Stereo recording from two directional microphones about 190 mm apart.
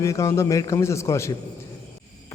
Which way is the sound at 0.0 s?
15° left (ahead or behind).